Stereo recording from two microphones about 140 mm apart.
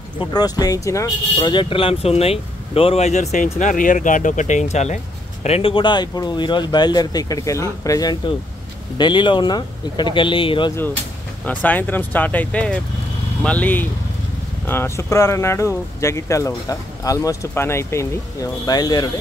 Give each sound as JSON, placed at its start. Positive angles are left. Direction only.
{"t": 0.2, "sound": "speech", "side_deg": 30}
{"t": 11.4, "sound": "speech", "side_deg": 10}